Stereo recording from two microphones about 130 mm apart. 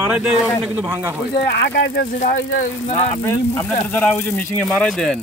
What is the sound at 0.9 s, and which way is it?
Speech, 20° right (ahead or behind).